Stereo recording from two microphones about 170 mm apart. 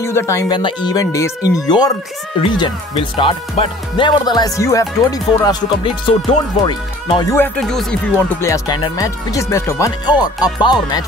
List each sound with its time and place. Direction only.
0.0 s speech: 15° left (ahead or behind)
7.3 s speech: 5° left (ahead or behind)
8.4 s speech: 20° left (ahead or behind)